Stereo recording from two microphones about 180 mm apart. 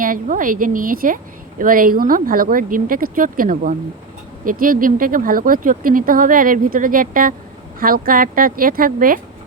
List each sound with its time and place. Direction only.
0.0 s a woman's voice: 50° right (ahead or behind)